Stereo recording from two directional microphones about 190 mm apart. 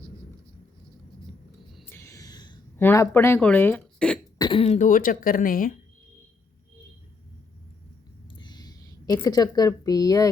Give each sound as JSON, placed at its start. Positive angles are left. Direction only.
{"t": 1.8, "sound": "a sound", "side_deg": 10}
{"t": 2.7, "sound": "speech", "side_deg": 15}
{"t": 4.4, "sound": "speech", "side_deg": 25}
{"t": 8.4, "sound": "a woman's voice", "side_deg": 20}